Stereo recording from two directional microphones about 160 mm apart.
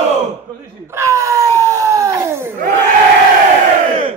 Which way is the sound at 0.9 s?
20° right (ahead or behind).